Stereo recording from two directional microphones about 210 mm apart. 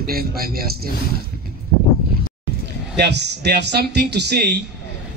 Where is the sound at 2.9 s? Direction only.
55° right (ahead or behind).